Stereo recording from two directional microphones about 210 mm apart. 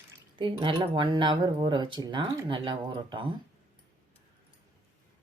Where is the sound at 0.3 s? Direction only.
25° right (ahead or behind).